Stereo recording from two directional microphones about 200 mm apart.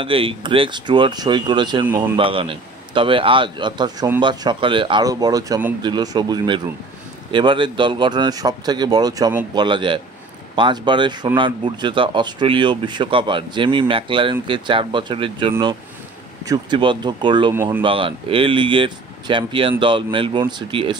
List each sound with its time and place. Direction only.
0.0 s speech: 25° right (ahead or behind)
17.6 s speech: 10° right (ahead or behind)
17.8 s speech: 25° right (ahead or behind)